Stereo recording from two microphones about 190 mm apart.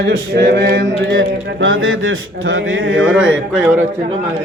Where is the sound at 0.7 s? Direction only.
70° right (ahead or behind); by 2.9 s 90° right.